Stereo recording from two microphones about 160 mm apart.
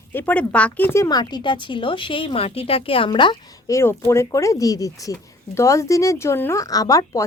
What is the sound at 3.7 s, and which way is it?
Speech, 15° left (ahead or behind).